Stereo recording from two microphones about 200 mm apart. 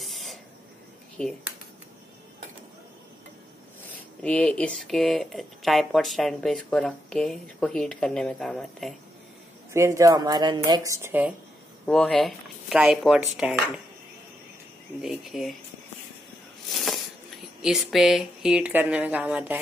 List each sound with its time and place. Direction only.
0.0 s spray: centre (ahead or behind)
3.8 s speech: 5° left (ahead or behind)
9.7 s speech: 15° right (ahead or behind)
11.8 s speech: 5° left (ahead or behind)
15.0 s speech: centre (ahead or behind)
16.7 s a sound: centre (ahead or behind)
17.6 s speech: centre (ahead or behind)